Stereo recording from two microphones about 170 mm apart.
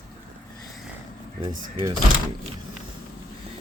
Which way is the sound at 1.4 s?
25° right (ahead or behind).